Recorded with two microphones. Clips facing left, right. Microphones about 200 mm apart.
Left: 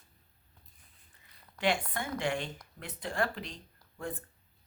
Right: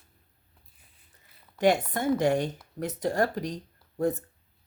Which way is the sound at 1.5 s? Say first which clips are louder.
Right 8 dB; 45° right (ahead or behind).